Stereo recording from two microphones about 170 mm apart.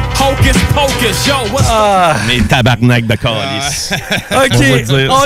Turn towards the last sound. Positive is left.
turn(degrees=0)  # may be behind; listen again after turning